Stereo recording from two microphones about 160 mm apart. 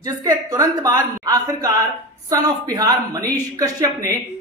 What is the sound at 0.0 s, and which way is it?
A man's voice, 20° right (ahead or behind).